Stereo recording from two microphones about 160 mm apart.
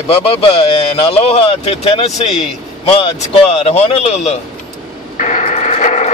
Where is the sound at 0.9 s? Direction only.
40° left (ahead or behind).